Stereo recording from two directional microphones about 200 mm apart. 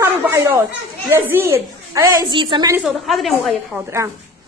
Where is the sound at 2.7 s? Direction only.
5° right (ahead or behind).